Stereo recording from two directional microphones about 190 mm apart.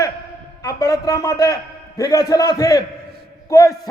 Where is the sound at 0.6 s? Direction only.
20° left (ahead or behind).